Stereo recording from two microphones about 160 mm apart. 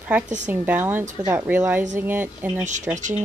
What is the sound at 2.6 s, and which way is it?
Speech, 50° right (ahead or behind).